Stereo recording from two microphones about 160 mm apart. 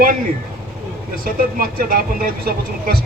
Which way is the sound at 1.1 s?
65° right (ahead or behind).